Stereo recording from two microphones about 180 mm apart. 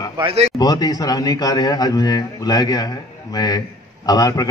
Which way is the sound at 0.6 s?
20° left (ahead or behind).